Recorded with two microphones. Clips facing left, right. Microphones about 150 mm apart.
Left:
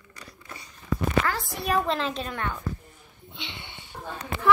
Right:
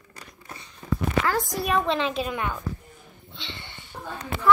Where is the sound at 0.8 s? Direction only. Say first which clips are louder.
Right 1 dB; 40° right (ahead or behind).